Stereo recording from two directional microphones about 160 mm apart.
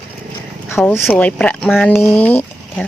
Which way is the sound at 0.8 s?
5° left (ahead or behind).